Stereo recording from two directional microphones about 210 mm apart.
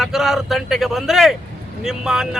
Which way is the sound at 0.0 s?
Centre (ahead or behind).